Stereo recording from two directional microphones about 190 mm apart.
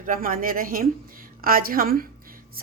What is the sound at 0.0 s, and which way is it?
A woman's voice, 45° right (ahead or behind).